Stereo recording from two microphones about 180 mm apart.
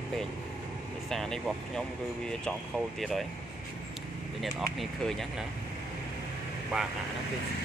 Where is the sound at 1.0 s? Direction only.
Centre (ahead or behind).